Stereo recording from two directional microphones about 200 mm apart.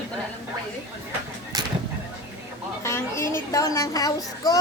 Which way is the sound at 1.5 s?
20° right (ahead or behind).